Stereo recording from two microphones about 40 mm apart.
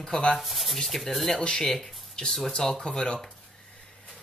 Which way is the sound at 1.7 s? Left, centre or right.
Centre.